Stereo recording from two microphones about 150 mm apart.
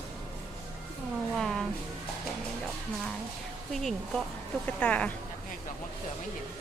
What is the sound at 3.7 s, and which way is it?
A woman's voice, centre (ahead or behind).